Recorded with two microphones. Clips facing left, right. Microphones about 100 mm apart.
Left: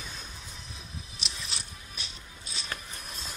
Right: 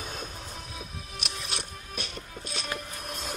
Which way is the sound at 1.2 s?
60° right (ahead or behind).